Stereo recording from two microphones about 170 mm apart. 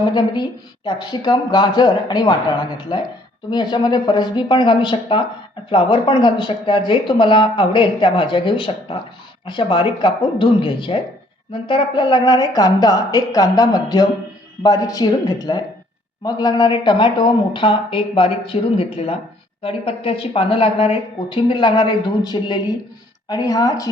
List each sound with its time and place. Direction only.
0.0 s a woman's voice: 25° left (ahead or behind)